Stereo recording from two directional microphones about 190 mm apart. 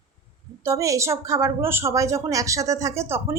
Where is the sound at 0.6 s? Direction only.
15° right (ahead or behind).